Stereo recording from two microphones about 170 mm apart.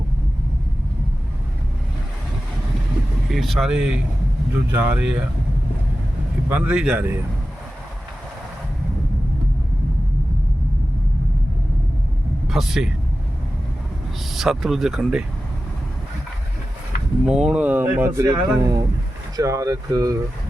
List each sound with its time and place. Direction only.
3.3 s speech: centre (ahead or behind)
6.5 s speech: 5° right (ahead or behind)
12.5 s speech: centre (ahead or behind)
14.3 s speech: centre (ahead or behind)
17.2 s speech: 5° right (ahead or behind); by 20.1 s 20° right (ahead or behind)